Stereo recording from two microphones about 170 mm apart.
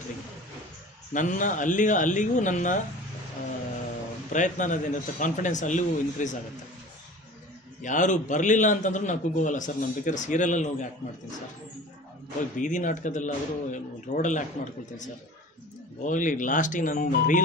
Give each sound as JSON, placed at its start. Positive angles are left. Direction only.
{"t": 1.1, "sound": "a man's voice", "side_deg": 50}
{"t": 4.3, "sound": "a man's voice", "side_deg": 45}
{"t": 7.8, "sound": "a man's voice", "side_deg": 45}
{"t": 12.5, "sound": "a man's voice", "side_deg": 50}